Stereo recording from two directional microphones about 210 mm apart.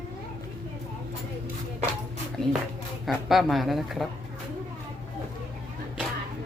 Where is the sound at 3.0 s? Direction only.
Centre (ahead or behind).